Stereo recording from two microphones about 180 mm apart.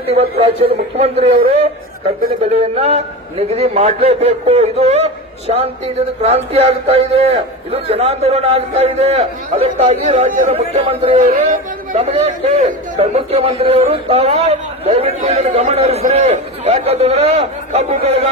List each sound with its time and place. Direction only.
0.1 s a man's voice: 35° right (ahead or behind)
2.4 s a man's voice: 35° right (ahead or behind)